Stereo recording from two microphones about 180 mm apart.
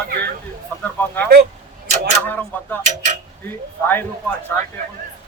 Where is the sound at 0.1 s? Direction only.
60° right (ahead or behind).